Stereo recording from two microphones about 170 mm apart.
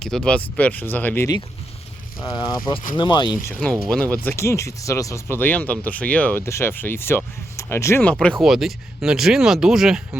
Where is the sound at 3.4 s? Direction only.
5° left (ahead or behind).